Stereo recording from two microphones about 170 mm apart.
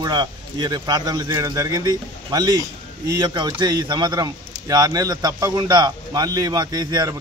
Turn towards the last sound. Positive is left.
turn(degrees=-25)  # may be behind; listen again after turning